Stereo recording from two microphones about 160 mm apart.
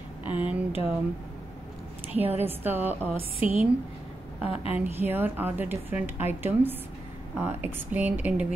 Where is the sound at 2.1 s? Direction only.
10° right (ahead or behind).